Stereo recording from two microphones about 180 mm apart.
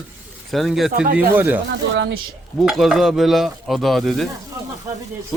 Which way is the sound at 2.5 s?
Centre (ahead or behind).